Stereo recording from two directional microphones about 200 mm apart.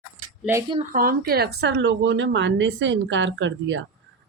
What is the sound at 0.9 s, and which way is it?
Speech, 45° right (ahead or behind).